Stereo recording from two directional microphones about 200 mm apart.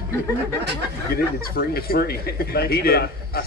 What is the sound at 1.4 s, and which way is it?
A man's voice, 50° left (ahead or behind).